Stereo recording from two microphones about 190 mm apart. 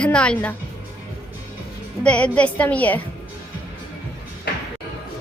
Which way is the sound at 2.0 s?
5° left (ahead or behind).